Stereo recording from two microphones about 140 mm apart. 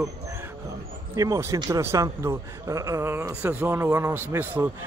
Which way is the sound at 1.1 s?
25° right (ahead or behind).